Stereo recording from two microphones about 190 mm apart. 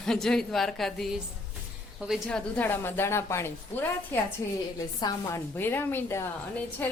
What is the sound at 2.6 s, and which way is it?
A woman's voice, 10° left (ahead or behind).